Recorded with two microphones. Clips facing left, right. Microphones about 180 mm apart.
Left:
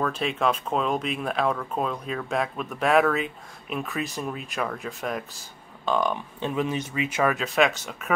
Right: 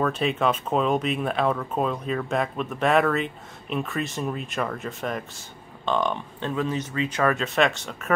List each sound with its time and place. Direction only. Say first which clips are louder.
0.0 s speech: right 2 dB; centre (ahead or behind)